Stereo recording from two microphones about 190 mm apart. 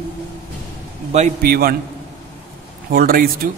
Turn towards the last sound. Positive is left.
turn(degrees=-50)  # may be behind; listen again after turning